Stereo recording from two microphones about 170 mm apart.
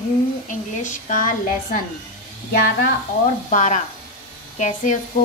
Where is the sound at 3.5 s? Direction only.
45° left (ahead or behind).